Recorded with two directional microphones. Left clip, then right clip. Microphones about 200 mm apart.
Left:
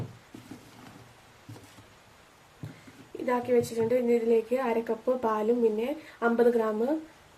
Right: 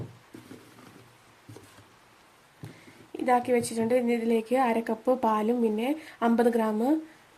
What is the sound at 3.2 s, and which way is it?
A woman's voice, 55° right (ahead or behind).